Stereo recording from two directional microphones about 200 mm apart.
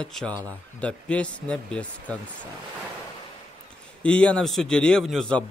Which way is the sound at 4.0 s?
5° left (ahead or behind).